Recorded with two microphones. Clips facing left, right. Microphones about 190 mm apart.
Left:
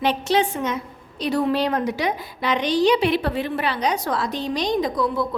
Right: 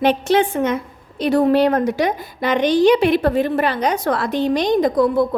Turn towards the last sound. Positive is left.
turn(degrees=-50)  # may be behind; listen again after turning